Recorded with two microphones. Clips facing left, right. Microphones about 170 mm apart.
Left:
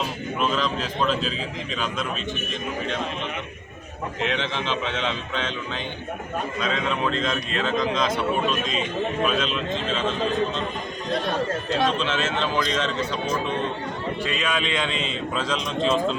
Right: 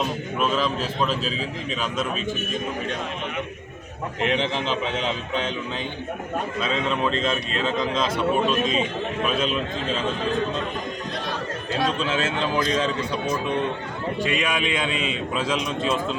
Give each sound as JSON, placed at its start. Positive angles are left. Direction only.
{"t": 0.3, "sound": "a man's voice", "side_deg": -5}
{"t": 4.4, "sound": "a man's voice", "side_deg": -40}
{"t": 7.6, "sound": "a man's voice", "side_deg": -5}
{"t": 9.2, "sound": "a man's voice", "side_deg": -5}
{"t": 11.9, "sound": "a man's voice", "side_deg": -10}
{"t": 14.2, "sound": "a man's voice", "side_deg": -15}